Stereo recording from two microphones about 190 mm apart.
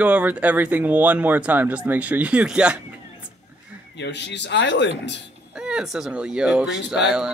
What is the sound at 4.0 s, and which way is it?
Speech, 65° left (ahead or behind).